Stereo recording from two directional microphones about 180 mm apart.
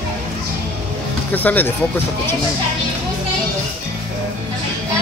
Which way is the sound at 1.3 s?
10° left (ahead or behind).